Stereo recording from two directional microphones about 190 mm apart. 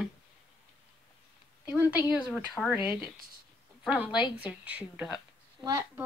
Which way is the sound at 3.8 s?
5° right (ahead or behind).